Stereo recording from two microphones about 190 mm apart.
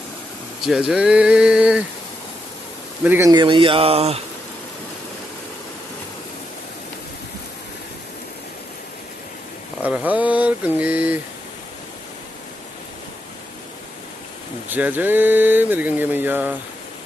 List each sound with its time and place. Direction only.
0.7 s speech: 5° right (ahead or behind)
3.0 s speech: 10° right (ahead or behind); by 4.2 s 30° right (ahead or behind)
9.8 s speech: 5° right (ahead or behind)
14.7 s speech: 10° right (ahead or behind)